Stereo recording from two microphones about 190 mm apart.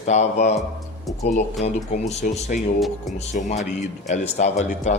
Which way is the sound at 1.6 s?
35° left (ahead or behind).